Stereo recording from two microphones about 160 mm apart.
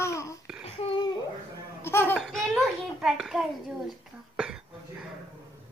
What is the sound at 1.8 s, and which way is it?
Laughter, 15° left (ahead or behind).